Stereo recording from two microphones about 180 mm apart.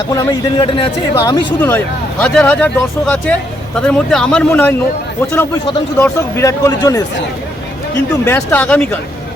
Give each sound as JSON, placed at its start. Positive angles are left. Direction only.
{"t": 0.1, "sound": "a man's voice", "side_deg": 20}
{"t": 6.0, "sound": "speech", "side_deg": 15}
{"t": 8.2, "sound": "speech", "side_deg": 15}